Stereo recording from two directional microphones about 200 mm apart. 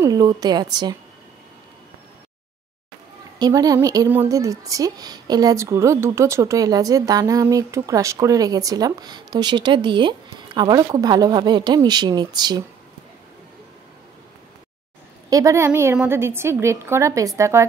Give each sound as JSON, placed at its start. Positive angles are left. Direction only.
{"t": 0.0, "sound": "a woman's voice", "side_deg": -20}
{"t": 3.3, "sound": "a woman's voice", "side_deg": -20}
{"t": 15.2, "sound": "a woman's voice", "side_deg": -15}